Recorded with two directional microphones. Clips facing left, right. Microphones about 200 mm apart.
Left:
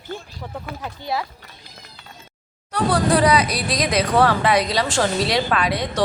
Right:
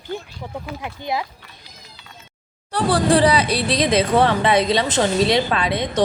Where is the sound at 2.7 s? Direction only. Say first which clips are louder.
Right 2 dB; 30° right (ahead or behind).